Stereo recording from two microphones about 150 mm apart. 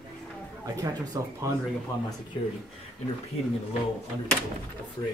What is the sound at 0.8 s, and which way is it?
Speech, 20° right (ahead or behind).